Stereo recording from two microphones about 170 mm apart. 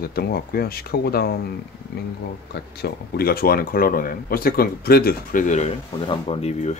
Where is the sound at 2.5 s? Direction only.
65° left (ahead or behind); by 5.7 s 50° left (ahead or behind).